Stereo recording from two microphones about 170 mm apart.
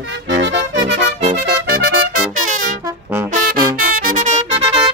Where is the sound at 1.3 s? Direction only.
70° right (ahead or behind).